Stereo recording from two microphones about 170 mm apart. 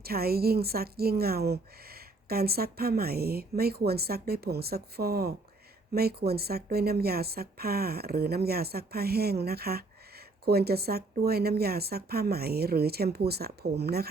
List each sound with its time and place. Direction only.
0.0 s a woman's voice: 65° right (ahead or behind)